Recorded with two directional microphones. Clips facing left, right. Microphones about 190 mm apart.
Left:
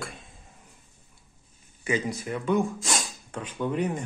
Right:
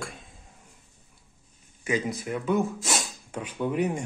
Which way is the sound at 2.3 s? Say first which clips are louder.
Left 1 dB; 5° right (ahead or behind).